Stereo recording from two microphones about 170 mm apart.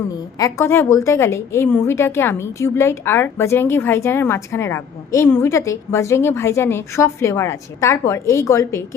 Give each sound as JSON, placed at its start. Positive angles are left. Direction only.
{"t": 0.3, "sound": "a woman's voice", "side_deg": 20}